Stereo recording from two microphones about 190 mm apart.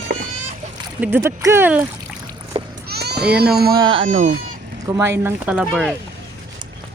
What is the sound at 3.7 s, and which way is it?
Speech, 25° right (ahead or behind).